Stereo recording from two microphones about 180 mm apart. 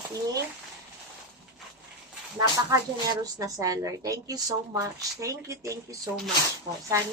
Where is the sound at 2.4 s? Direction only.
20° right (ahead or behind).